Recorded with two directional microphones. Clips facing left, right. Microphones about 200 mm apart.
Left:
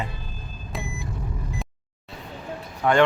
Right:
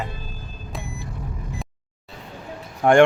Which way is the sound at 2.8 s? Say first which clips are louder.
Right 5 dB; 45° right (ahead or behind).